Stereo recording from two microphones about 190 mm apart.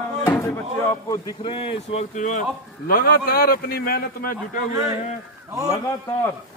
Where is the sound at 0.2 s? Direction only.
15° left (ahead or behind); by 2.4 s 40° left (ahead or behind).